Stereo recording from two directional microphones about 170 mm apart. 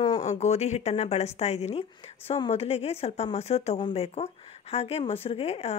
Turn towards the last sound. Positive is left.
turn(degrees=35)  # may be behind; listen again after turning